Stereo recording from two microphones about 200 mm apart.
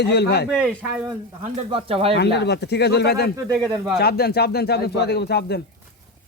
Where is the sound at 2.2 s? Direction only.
55° left (ahead or behind).